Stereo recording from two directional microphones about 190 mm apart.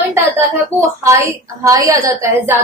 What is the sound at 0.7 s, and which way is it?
A woman's voice, 15° right (ahead or behind).